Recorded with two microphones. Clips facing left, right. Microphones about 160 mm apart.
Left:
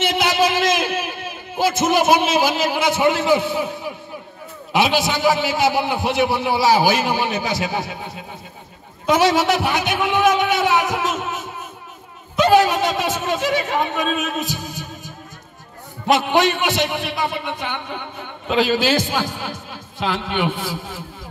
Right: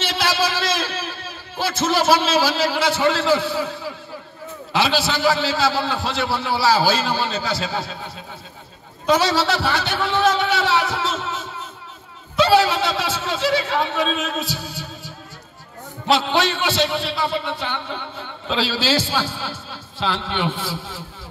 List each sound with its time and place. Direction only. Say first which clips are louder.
0.0 s a sound: left 4 dB; 15° left (ahead or behind)
4.7 s a man's voice: left 2 dB; 20° left (ahead or behind)
16.3 s a man's voice: left 3 dB; 15° left (ahead or behind)